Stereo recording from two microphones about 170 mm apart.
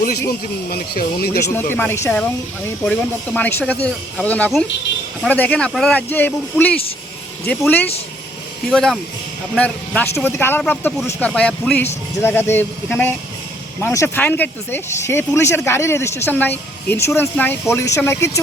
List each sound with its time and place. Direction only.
0.0 s a man's voice: 65° left (ahead or behind)
1.7 s speech: 15° left (ahead or behind)